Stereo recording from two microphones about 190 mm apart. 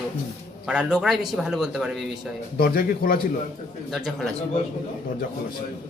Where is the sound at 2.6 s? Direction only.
50° left (ahead or behind).